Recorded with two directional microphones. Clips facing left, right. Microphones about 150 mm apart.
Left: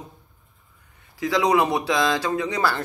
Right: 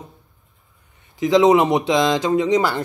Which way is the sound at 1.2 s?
20° right (ahead or behind).